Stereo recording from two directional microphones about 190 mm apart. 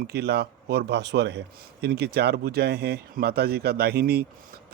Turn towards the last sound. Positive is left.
turn(degrees=-55)  # may be behind; listen again after turning